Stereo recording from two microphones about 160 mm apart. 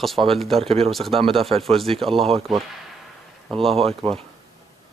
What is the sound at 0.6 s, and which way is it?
Speech, 40° right (ahead or behind).